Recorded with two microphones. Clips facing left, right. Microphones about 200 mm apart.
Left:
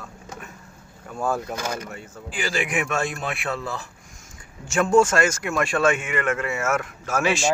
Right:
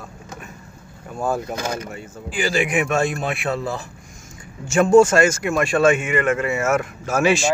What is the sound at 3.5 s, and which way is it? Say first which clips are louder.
Speech: right 5 dB; 35° right (ahead or behind).